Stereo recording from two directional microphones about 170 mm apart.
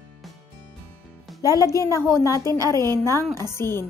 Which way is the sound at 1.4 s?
20° left (ahead or behind).